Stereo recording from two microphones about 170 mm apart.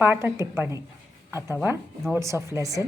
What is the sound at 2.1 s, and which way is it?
Speech, 15° right (ahead or behind).